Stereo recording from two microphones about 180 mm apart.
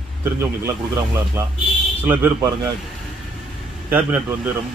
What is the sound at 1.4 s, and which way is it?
Speech, 15° right (ahead or behind).